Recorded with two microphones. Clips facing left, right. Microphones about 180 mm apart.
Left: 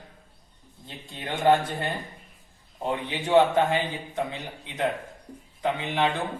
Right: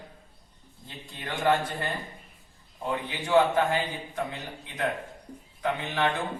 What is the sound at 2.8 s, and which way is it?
A man's voice, 25° left (ahead or behind).